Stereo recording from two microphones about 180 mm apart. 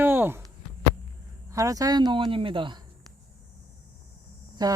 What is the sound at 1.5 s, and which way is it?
Speech, 20° right (ahead or behind).